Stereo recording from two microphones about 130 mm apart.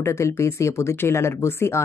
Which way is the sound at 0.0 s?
20° left (ahead or behind).